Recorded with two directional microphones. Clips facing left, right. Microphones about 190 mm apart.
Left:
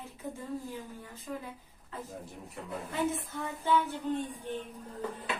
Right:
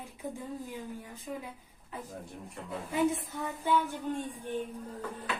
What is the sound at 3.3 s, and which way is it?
Speech, 15° right (ahead or behind).